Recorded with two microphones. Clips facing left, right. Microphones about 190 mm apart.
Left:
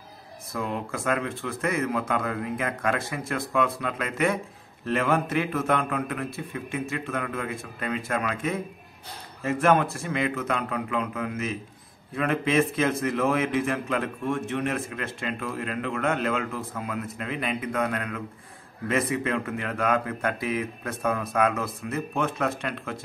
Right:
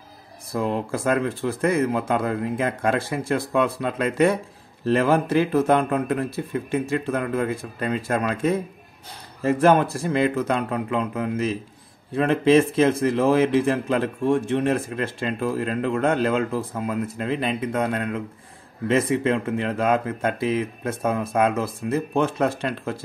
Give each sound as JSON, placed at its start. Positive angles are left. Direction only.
{"t": 0.5, "sound": "speech", "side_deg": -30}